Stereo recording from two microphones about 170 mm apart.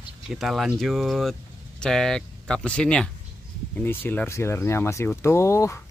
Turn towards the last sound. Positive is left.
turn(degrees=15)  # may be behind; listen again after turning